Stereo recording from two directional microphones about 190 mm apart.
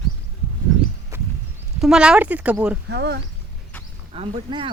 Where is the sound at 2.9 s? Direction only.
60° right (ahead or behind).